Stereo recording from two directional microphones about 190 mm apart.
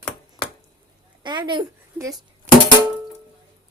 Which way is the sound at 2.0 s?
10° right (ahead or behind).